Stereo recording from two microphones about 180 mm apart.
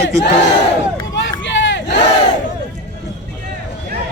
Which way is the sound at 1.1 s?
90° left.